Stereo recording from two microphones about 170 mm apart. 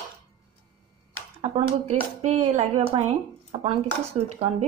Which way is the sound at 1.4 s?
35° right (ahead or behind).